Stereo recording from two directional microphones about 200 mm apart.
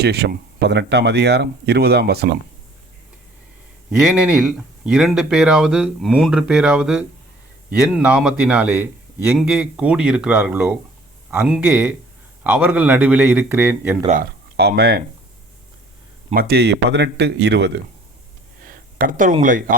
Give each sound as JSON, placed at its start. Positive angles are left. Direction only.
{"t": 0.0, "sound": "speech", "side_deg": -55}
{"t": 3.8, "sound": "a man's voice", "side_deg": -5}
{"t": 14.5, "sound": "speech", "side_deg": -55}
{"t": 16.3, "sound": "speech", "side_deg": -50}
{"t": 18.6, "sound": "speech", "side_deg": -45}